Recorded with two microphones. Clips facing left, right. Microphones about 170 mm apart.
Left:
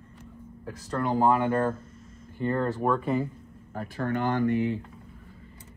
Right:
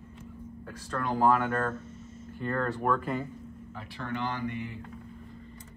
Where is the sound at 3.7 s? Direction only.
45° left (ahead or behind).